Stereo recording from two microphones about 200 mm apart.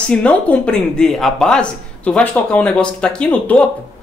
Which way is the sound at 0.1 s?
5° left (ahead or behind).